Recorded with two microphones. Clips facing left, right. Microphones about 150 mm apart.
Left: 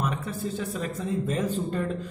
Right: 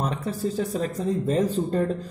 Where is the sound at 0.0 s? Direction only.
35° right (ahead or behind).